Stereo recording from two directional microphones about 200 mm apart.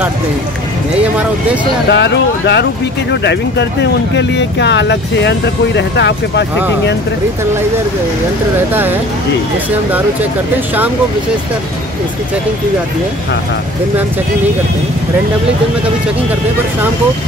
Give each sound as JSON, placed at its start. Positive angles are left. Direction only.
{"t": 1.9, "sound": "speech", "side_deg": 60}